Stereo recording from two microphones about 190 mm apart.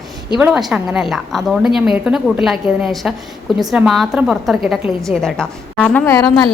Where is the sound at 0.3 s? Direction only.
5° right (ahead or behind).